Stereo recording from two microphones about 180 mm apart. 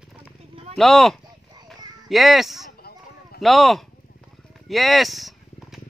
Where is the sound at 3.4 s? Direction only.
Centre (ahead or behind).